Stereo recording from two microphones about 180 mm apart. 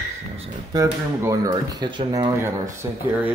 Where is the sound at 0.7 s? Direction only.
20° right (ahead or behind).